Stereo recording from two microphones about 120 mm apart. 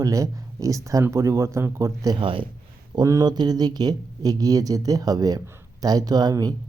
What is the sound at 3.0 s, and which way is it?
Speech, 30° right (ahead or behind).